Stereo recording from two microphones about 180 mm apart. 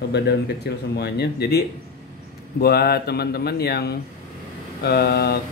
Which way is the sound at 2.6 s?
60° left (ahead or behind).